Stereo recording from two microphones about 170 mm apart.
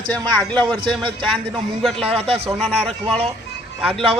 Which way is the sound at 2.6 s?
5° left (ahead or behind).